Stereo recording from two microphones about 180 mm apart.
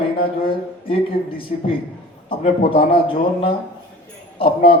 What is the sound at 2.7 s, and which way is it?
Speech, 30° left (ahead or behind).